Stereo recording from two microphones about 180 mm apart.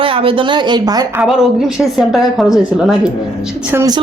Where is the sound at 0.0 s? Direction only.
30° right (ahead or behind).